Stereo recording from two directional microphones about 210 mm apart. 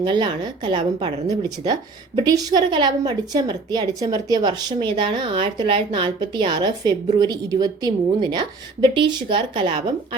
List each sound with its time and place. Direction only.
0.0 s speech: 20° right (ahead or behind)